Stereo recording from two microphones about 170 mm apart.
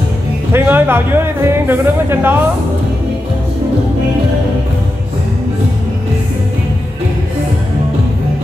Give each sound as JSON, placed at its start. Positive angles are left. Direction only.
{"t": 0.5, "sound": "speech", "side_deg": -10}